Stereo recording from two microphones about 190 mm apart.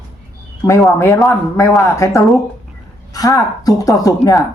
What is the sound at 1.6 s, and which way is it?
A woman's voice, 15° left (ahead or behind).